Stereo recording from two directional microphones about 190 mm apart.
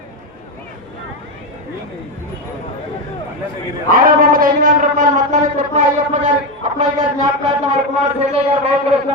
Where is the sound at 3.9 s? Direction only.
45° right (ahead or behind).